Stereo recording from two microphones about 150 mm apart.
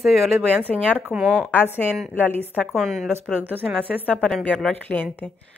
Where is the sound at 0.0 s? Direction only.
Centre (ahead or behind).